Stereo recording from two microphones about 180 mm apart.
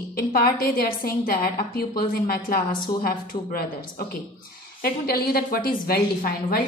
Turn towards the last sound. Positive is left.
turn(degrees=55)  # may be behind; listen again after turning